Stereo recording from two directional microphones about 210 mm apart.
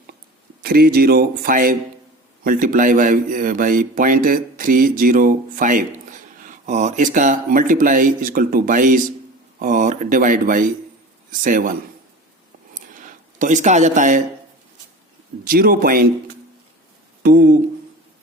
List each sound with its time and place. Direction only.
0.6 s a man's voice: 45° right (ahead or behind)
12.7 s a sound: 40° right (ahead or behind)
15.4 s speech: 45° right (ahead or behind)
17.2 s speech: 45° right (ahead or behind)